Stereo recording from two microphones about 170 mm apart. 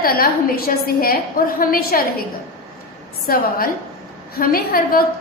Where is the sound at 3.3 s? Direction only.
60° left (ahead or behind).